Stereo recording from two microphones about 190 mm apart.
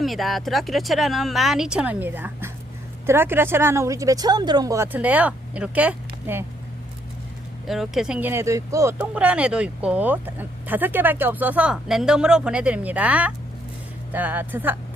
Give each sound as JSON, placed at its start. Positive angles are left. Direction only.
{"t": 0.0, "sound": "speech", "side_deg": 0}
{"t": 7.7, "sound": "speech", "side_deg": 0}